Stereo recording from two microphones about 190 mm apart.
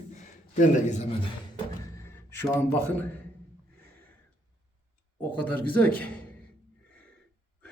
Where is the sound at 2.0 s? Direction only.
10° left (ahead or behind).